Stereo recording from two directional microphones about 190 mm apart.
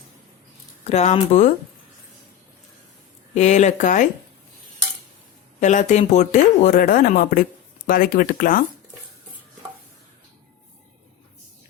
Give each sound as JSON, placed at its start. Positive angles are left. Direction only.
{"t": 0.9, "sound": "speech", "side_deg": 35}
{"t": 3.3, "sound": "speech", "side_deg": 40}
{"t": 5.5, "sound": "speech", "side_deg": 40}